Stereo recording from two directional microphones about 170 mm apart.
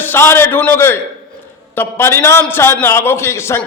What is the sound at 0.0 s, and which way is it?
A man's voice, 15° left (ahead or behind).